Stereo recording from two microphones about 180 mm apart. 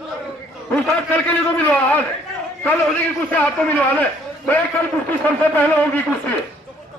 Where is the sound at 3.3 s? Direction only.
10° left (ahead or behind).